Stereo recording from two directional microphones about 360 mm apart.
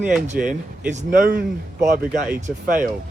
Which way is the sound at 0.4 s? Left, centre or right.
Right.